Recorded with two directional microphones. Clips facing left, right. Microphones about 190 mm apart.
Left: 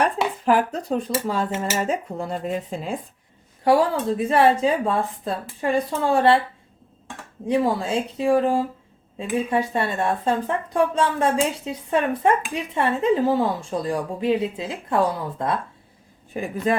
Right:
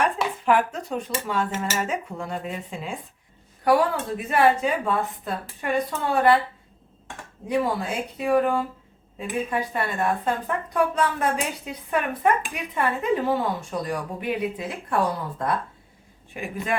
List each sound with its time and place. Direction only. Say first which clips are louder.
0.4 s speech: left 1 dB; 35° left (ahead or behind)
3.6 s speech: left 2 dB; 25° left (ahead or behind)
7.4 s speech: left 3 dB; 30° left (ahead or behind)
16.3 s speech: left 7 dB; 35° left (ahead or behind)